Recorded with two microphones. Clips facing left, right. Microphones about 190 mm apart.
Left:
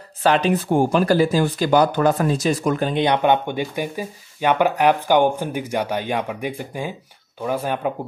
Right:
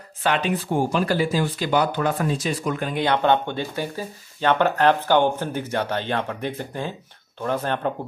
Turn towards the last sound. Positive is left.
turn(degrees=10)  # may be behind; listen again after turning